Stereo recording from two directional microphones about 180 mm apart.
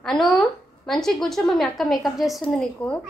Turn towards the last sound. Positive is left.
turn(degrees=0)  # may be behind; listen again after turning